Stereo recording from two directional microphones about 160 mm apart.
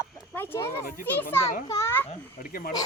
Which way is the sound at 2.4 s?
65° left (ahead or behind).